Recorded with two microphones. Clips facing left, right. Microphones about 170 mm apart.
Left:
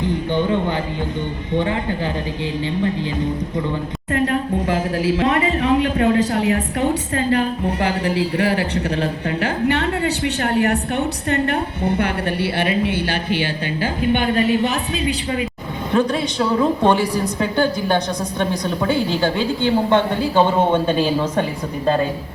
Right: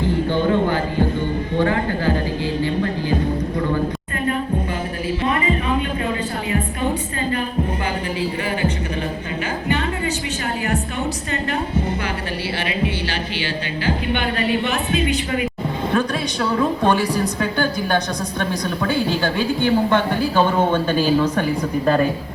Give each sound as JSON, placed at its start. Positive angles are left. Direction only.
{"t": 0.0, "sound": "a sound", "side_deg": 20}
{"t": 1.5, "sound": "a woman's voice", "side_deg": 20}
{"t": 4.7, "sound": "a sound", "side_deg": 90}
{"t": 8.0, "sound": "speech", "side_deg": 75}
{"t": 9.4, "sound": "a sound", "side_deg": 70}
{"t": 10.5, "sound": "a woman's voice", "side_deg": 65}
{"t": 12.5, "sound": "a woman's voice", "side_deg": 55}
{"t": 14.0, "sound": "a woman's voice", "side_deg": 45}
{"t": 16.0, "sound": "a woman's voice", "side_deg": 20}